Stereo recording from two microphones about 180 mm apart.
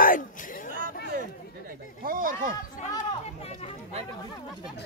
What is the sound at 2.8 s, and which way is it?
Chatter, 45° left (ahead or behind).